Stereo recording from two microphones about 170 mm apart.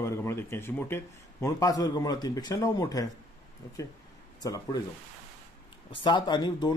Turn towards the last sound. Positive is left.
turn(degrees=25)  # may be behind; listen again after turning